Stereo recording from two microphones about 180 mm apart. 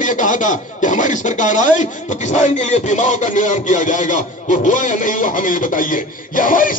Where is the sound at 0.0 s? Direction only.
45° left (ahead or behind).